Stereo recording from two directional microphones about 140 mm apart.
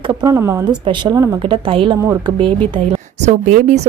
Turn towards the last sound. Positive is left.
turn(degrees=-55)  # may be behind; listen again after turning